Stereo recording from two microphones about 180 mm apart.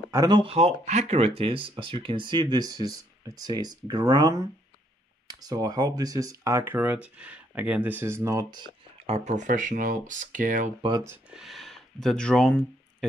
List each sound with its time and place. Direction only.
0.1 s speech: 20° right (ahead or behind); by 10.7 s 45° right (ahead or behind)
11.1 s speech: 5° right (ahead or behind)